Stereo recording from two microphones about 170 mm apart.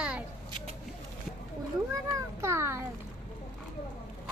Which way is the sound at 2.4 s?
15° right (ahead or behind).